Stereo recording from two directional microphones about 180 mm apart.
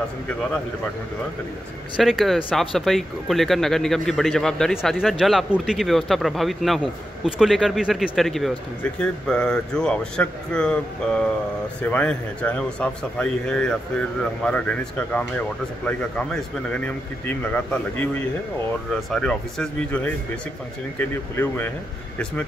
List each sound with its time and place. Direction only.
2.0 s speech: centre (ahead or behind)
21.0 s speech: 10° left (ahead or behind)